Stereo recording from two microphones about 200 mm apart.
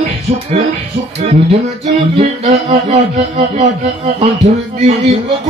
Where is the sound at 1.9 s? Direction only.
35° right (ahead or behind).